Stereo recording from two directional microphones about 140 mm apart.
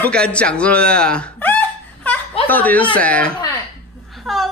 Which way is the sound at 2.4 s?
10° left (ahead or behind).